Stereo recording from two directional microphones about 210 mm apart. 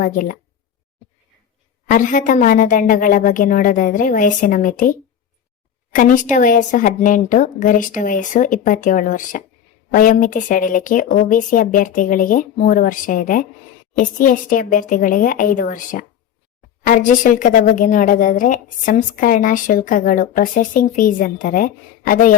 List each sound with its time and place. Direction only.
0.0 s a woman's voice: 40° left (ahead or behind)
1.9 s a woman's voice: 40° left (ahead or behind)